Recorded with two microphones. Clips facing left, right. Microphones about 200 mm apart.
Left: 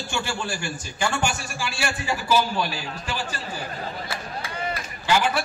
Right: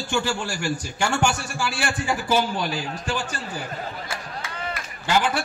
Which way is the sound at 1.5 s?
50° right (ahead or behind).